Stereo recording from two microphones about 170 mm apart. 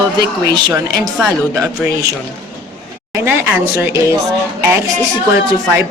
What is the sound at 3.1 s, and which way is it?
Speech, 15° right (ahead or behind).